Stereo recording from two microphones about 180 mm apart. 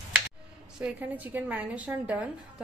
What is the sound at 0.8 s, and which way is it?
A woman's voice, 10° right (ahead or behind).